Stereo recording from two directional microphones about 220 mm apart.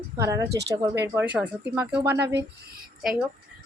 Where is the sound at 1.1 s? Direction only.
5° right (ahead or behind).